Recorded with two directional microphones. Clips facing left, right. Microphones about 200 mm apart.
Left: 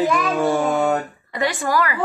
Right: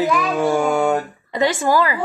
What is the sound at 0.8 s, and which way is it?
Speech, 20° right (ahead or behind).